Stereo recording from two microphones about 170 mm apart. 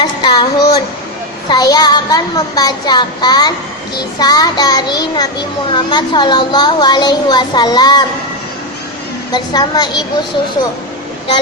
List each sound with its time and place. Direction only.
0.0 s a sound: 25° left (ahead or behind)
1.5 s a child's voice: 25° left (ahead or behind)
9.3 s a child's voice: 25° left (ahead or behind)